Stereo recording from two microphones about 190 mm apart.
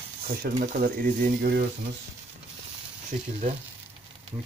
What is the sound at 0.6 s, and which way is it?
Speech, 50° right (ahead or behind).